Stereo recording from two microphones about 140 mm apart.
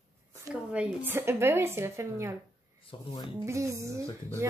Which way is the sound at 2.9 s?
35° left (ahead or behind).